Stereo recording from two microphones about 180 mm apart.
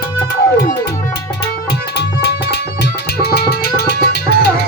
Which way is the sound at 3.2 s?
65° left (ahead or behind).